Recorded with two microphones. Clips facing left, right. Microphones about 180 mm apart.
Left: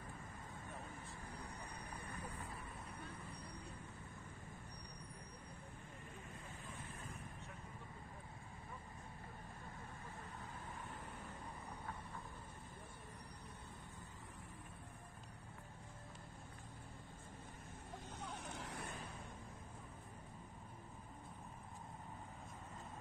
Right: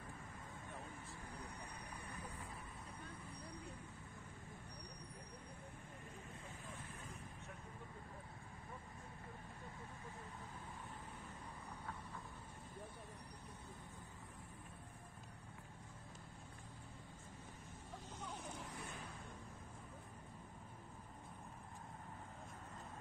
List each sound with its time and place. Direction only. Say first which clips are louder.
18.3 s vehicle: left 1 dB; 70° left (ahead or behind)